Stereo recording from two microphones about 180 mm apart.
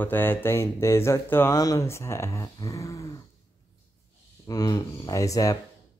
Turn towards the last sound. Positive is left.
turn(degrees=20)  # may be behind; listen again after turning